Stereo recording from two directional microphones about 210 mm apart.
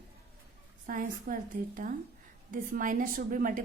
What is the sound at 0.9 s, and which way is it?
A woman's voice, 40° right (ahead or behind).